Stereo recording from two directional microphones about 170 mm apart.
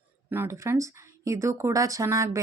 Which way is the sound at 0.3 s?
15° right (ahead or behind).